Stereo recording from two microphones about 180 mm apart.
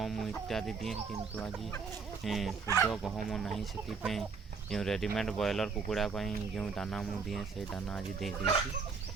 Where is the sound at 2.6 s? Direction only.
15° left (ahead or behind).